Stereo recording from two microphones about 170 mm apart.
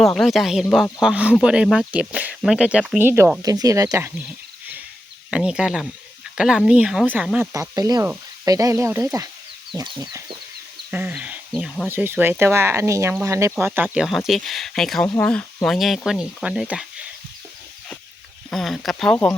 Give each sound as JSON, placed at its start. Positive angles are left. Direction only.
{"t": 0.0, "sound": "speech", "side_deg": 0}
{"t": 7.5, "sound": "chicken", "side_deg": -20}
{"t": 8.4, "sound": "speech", "side_deg": -20}
{"t": 9.7, "sound": "chicken", "side_deg": -25}
{"t": 10.9, "sound": "speech", "side_deg": -10}
{"t": 18.5, "sound": "speech", "side_deg": 0}